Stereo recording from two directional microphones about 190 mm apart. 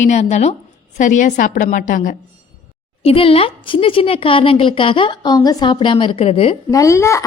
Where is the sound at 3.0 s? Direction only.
30° left (ahead or behind).